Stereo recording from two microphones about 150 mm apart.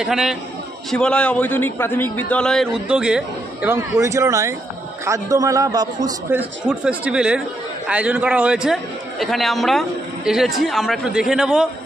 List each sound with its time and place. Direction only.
0.0 s a man's voice: 5° right (ahead or behind)
3.7 s a man's voice: 20° right (ahead or behind)
6.3 s a man's voice: 10° right (ahead or behind)